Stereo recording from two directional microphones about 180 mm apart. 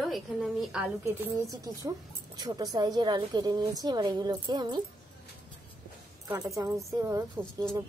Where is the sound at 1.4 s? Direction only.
20° right (ahead or behind).